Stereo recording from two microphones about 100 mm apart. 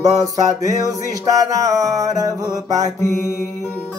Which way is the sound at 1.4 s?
40° right (ahead or behind).